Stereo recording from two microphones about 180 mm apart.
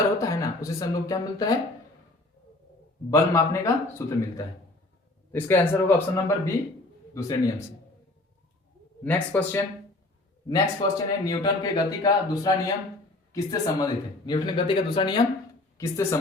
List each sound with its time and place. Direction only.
0.2 s speech: 20° left (ahead or behind)
3.1 s a man's voice: 15° left (ahead or behind)
9.0 s a man's voice: 10° left (ahead or behind)
10.5 s a man's voice: 20° left (ahead or behind)